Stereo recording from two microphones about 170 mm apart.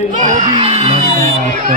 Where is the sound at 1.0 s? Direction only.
45° right (ahead or behind).